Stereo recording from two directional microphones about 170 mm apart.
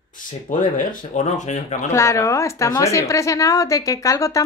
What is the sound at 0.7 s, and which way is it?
Speech, 50° left (ahead or behind).